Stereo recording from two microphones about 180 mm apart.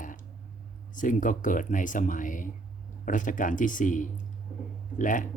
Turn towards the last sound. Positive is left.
turn(degrees=45)  # may be behind; listen again after turning